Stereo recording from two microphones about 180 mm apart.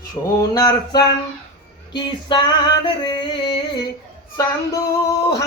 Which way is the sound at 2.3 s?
25° left (ahead or behind).